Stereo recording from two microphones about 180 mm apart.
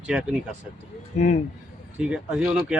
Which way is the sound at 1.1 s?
40° left (ahead or behind).